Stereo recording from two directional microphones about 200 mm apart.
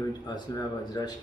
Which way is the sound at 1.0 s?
20° left (ahead or behind).